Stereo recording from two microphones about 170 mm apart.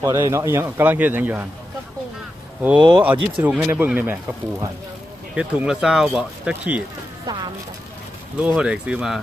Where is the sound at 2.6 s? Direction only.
10° right (ahead or behind).